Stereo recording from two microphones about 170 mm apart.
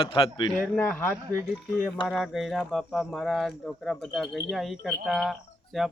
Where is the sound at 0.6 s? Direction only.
10° left (ahead or behind).